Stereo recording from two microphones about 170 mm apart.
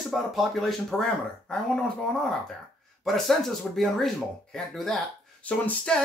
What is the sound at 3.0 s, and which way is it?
Speech, centre (ahead or behind).